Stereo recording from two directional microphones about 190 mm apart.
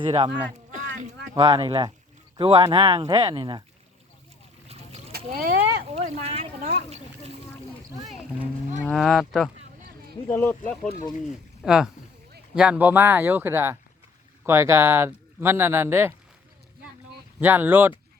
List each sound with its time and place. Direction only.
0.0 s speech: 25° right (ahead or behind)
1.3 s speech: 20° right (ahead or behind)
4.7 s boat: 35° right (ahead or behind)
5.1 s speech: 50° right (ahead or behind)
5.8 s speech: 35° right (ahead or behind)
8.0 s livestock: 5° right (ahead or behind)
8.8 s speech: centre (ahead or behind)
11.6 s speech: 5° right (ahead or behind)
17.4 s speech: 10° right (ahead or behind)